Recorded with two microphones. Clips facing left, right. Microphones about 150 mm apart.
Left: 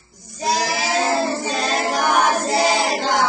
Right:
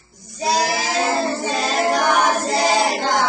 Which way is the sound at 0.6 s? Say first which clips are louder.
Right 1 dB; 45° right (ahead or behind).